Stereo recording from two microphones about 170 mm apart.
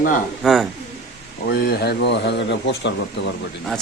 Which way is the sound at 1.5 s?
70° left (ahead or behind).